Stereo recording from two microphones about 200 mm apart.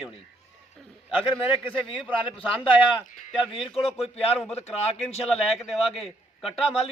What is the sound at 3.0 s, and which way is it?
A man's voice, 35° left (ahead or behind).